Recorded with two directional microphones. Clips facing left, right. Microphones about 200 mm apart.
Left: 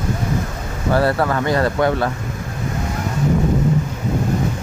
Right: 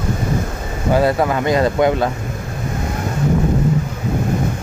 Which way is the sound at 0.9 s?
15° right (ahead or behind).